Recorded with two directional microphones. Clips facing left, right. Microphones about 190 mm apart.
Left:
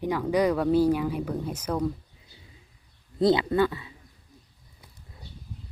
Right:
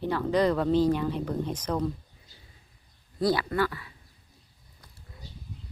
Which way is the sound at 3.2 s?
25° left (ahead or behind).